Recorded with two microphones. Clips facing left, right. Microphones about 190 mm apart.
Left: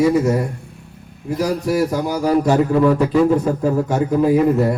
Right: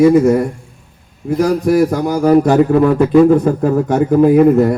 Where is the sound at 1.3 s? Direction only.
50° right (ahead or behind).